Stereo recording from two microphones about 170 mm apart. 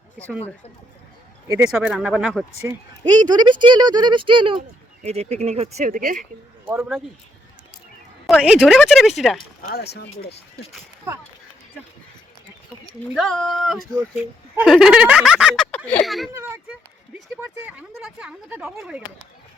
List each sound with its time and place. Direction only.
1.5 s speech: 20° right (ahead or behind)
1.7 s speech: centre (ahead or behind)
2.6 s speech: 15° right (ahead or behind); by 6.2 s 50° right (ahead or behind)
6.7 s speech: 5° right (ahead or behind)
8.3 s speech: 5° right (ahead or behind)
9.6 s speech: 70° left (ahead or behind)
12.8 s speech: 5° left (ahead or behind)
16.3 s speech: 15° right (ahead or behind)